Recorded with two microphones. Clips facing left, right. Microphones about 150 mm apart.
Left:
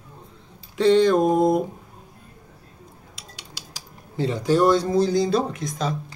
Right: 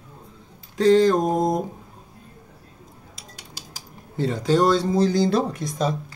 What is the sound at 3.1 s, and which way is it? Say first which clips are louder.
Cutlery: even; 45° right (ahead or behind).